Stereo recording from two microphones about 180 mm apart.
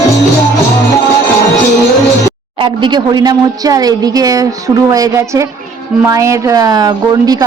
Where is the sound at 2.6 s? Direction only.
25° right (ahead or behind).